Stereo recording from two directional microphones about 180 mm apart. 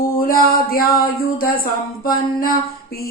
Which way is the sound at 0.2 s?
55° left (ahead or behind).